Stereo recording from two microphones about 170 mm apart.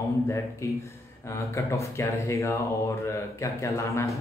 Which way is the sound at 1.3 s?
15° left (ahead or behind).